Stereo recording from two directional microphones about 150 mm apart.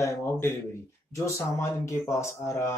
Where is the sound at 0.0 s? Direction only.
20° left (ahead or behind).